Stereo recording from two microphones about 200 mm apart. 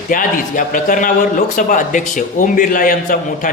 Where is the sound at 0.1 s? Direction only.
45° left (ahead or behind).